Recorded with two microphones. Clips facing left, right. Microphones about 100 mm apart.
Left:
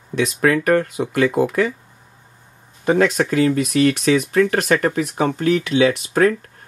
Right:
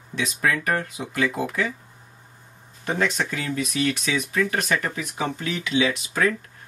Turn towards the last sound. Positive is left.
turn(degrees=50)  # may be behind; listen again after turning